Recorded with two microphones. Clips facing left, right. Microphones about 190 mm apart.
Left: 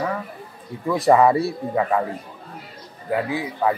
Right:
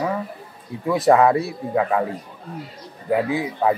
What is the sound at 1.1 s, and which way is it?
Speech, centre (ahead or behind).